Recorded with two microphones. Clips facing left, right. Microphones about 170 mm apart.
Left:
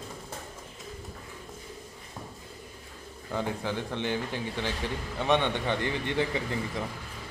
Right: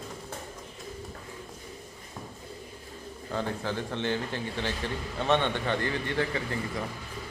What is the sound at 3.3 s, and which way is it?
Speech, 15° left (ahead or behind).